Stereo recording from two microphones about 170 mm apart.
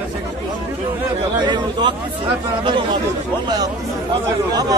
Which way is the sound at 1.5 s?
25° right (ahead or behind).